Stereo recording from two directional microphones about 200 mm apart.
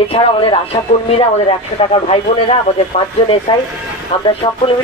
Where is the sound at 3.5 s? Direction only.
25° left (ahead or behind).